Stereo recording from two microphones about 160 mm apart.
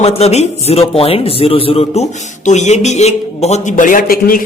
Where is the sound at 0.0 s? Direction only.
40° left (ahead or behind).